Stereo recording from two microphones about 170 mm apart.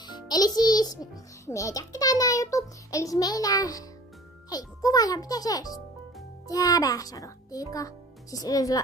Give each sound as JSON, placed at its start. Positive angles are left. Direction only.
{"t": 0.0, "sound": "music", "side_deg": 25}
{"t": 1.4, "sound": "a child's voice", "side_deg": 20}